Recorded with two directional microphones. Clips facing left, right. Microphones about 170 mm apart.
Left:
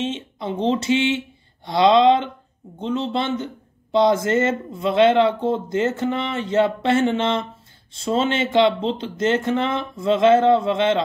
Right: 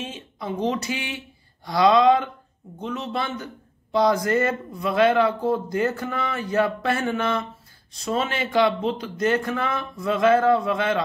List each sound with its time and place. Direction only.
0.0 s speech: 25° left (ahead or behind)